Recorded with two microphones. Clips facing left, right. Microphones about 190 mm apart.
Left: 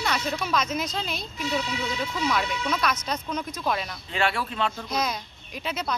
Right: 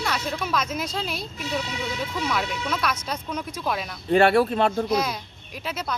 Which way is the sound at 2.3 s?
5° right (ahead or behind).